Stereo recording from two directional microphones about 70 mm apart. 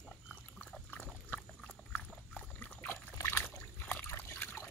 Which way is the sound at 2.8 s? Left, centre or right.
Left.